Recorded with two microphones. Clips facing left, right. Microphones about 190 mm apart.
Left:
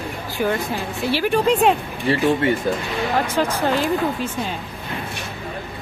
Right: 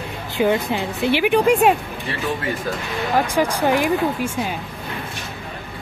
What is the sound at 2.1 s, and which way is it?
Speech, 30° left (ahead or behind).